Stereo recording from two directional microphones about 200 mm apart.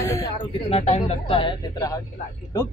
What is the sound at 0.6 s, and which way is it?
Speech, 30° left (ahead or behind).